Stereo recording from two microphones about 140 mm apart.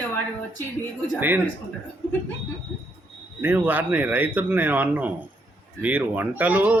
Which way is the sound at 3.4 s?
15° right (ahead or behind).